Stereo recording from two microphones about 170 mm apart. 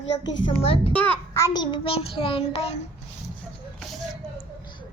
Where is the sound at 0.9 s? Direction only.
10° left (ahead or behind); by 2.7 s 35° left (ahead or behind).